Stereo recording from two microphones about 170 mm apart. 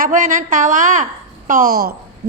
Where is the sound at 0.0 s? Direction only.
50° right (ahead or behind).